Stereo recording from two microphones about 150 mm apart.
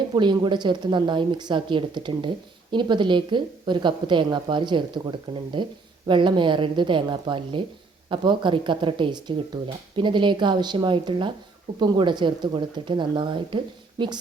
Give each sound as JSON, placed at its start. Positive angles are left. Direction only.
{"t": 0.1, "sound": "speech", "side_deg": -30}